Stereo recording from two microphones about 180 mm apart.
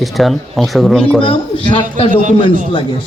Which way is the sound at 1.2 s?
30° left (ahead or behind).